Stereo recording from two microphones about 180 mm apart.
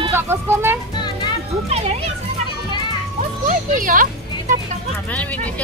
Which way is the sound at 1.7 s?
35° right (ahead or behind).